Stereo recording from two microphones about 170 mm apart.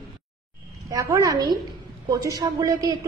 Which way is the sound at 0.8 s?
20° right (ahead or behind).